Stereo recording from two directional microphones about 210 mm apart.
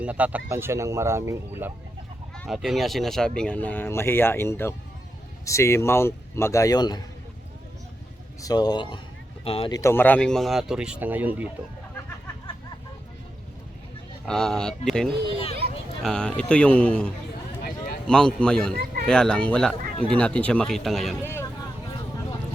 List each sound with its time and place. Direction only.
0.0 s speech: 5° right (ahead or behind)
2.3 s speech: centre (ahead or behind); by 7.0 s 20° left (ahead or behind)
8.4 s speech: 20° left (ahead or behind); by 11.4 s 10° right (ahead or behind)
14.3 s speech: 5° left (ahead or behind)
15.3 s speech: 25° left (ahead or behind)
16.0 s speech: 5° left (ahead or behind)
18.1 s speech: 5° left (ahead or behind)
18.7 s a sound: 45° right (ahead or behind)
19.0 s speech: 5° left (ahead or behind)
21.2 s vehicle: 15° left (ahead or behind)